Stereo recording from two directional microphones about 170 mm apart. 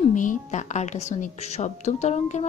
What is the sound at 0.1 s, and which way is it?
Speech, 50° left (ahead or behind).